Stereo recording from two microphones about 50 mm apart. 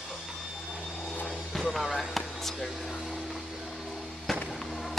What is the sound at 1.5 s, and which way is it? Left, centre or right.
Music, centre.